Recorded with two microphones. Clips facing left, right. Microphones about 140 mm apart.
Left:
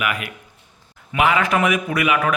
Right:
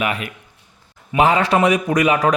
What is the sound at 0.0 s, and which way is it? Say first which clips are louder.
A man's voice: right 2 dB; 30° right (ahead or behind).